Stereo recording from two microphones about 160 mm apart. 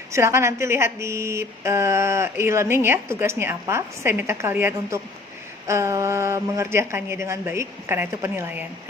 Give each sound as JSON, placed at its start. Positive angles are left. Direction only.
{"t": 0.1, "sound": "speech", "side_deg": -15}